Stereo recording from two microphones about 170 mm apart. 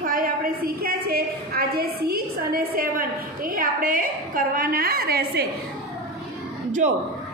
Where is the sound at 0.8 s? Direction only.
60° right (ahead or behind).